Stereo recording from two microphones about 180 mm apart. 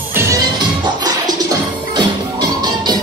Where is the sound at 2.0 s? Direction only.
25° right (ahead or behind).